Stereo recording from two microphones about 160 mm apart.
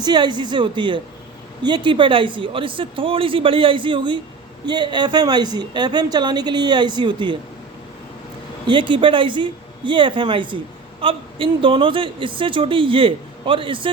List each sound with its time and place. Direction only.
0.0 s a woman's voice: 25° right (ahead or behind)
8.6 s speech: 30° right (ahead or behind)